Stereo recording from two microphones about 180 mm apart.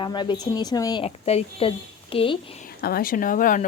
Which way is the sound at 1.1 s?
35° left (ahead or behind).